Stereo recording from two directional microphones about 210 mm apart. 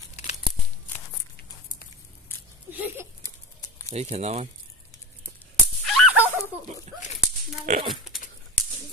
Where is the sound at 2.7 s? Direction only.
10° right (ahead or behind).